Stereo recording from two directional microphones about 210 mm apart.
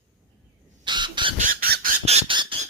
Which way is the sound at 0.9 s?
20° right (ahead or behind).